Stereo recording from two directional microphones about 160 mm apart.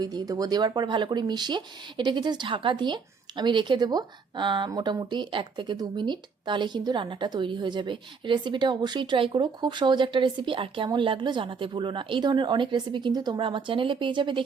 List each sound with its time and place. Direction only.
0.0 s a woman's voice: 25° right (ahead or behind)